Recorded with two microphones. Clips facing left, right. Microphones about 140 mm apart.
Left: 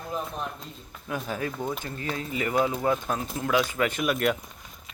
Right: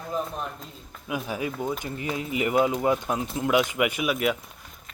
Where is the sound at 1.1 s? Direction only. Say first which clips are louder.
Right 1 dB; 10° right (ahead or behind).